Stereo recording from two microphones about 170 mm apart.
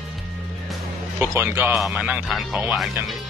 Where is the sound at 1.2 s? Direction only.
10° right (ahead or behind).